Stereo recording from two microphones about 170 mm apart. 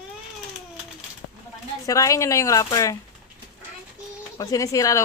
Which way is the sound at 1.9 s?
20° left (ahead or behind).